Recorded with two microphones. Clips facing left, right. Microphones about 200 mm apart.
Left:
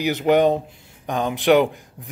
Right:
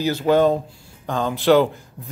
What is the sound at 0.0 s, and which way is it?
A man's voice, 20° left (ahead or behind).